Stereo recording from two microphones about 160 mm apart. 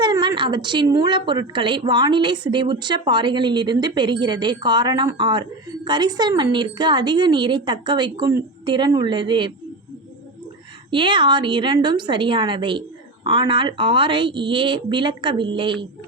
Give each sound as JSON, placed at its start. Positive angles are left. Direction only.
{"t": 0.0, "sound": "a woman's voice", "side_deg": -30}
{"t": 10.9, "sound": "a woman's voice", "side_deg": -30}